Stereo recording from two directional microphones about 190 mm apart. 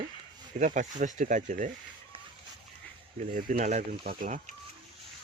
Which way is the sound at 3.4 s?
45° right (ahead or behind).